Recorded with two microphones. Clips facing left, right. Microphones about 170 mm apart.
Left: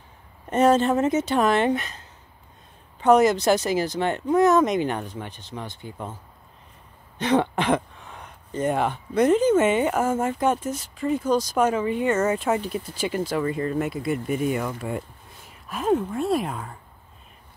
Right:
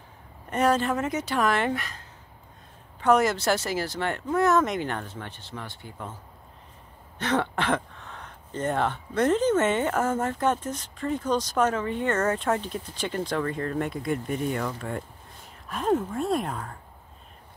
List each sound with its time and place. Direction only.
0.5 s speech: 25° left (ahead or behind)
3.0 s speech: 20° left (ahead or behind)
7.2 s speech: 15° left (ahead or behind)